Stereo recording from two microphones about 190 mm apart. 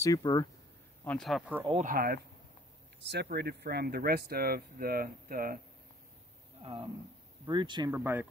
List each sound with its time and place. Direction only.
0.0 s speech: 20° left (ahead or behind)
1.0 s speech: 5° left (ahead or behind)
1.7 s speech: 40° right (ahead or behind)
6.6 s speech: 30° right (ahead or behind)
7.9 s speech: 10° right (ahead or behind)